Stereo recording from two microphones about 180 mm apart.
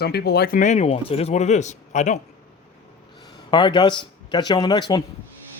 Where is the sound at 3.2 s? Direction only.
25° left (ahead or behind).